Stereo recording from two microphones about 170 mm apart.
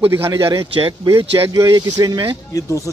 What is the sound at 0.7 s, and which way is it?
Speech, 30° right (ahead or behind).